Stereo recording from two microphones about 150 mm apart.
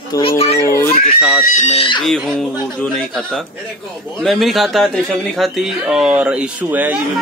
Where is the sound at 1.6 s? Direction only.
40° left (ahead or behind).